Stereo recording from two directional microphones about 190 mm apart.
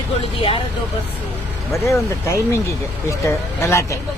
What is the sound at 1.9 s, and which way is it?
Speech, 15° left (ahead or behind).